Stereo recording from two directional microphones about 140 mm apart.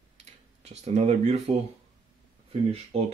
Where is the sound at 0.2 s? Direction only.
50° right (ahead or behind).